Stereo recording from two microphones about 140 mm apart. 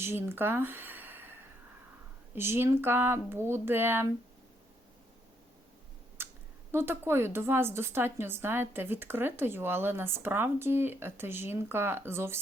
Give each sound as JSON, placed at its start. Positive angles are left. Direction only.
{"t": 0.0, "sound": "a woman's voice", "side_deg": -15}
{"t": 6.2, "sound": "clicking", "side_deg": -15}
{"t": 6.7, "sound": "a woman's voice", "side_deg": -15}